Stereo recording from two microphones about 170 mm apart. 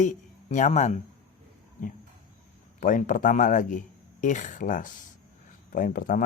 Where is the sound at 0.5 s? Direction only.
45° left (ahead or behind).